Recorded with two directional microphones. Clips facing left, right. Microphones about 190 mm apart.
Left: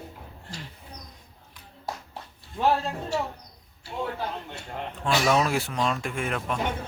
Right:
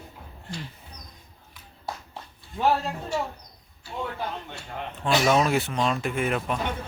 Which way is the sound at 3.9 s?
5° left (ahead or behind).